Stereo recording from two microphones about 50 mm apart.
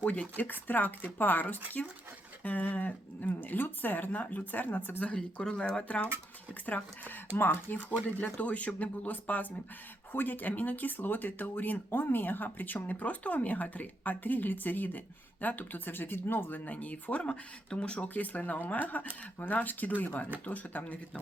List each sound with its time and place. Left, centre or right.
0.0 s speech: left
5.1 s speech: centre; by 7.2 s left
7.3 s speech: left
8.2 s speech: left
16.6 s speech: left